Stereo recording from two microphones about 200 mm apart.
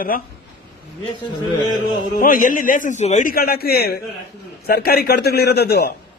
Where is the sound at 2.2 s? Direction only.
40° left (ahead or behind).